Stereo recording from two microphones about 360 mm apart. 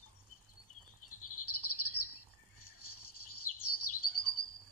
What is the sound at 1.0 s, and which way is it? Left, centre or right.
Bird, left.